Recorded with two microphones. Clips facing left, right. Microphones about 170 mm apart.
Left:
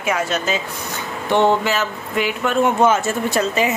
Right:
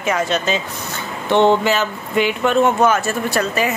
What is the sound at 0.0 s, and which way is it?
Speech, 5° left (ahead or behind).